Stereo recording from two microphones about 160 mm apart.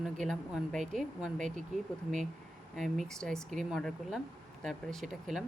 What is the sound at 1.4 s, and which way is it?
Speech, 50° right (ahead or behind).